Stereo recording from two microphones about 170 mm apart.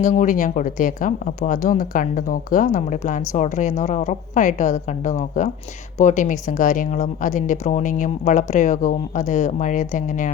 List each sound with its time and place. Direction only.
0.0 s speech: 45° left (ahead or behind)